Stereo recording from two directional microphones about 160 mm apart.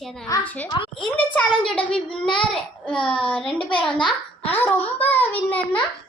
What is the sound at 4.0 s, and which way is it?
Speech, 30° left (ahead or behind).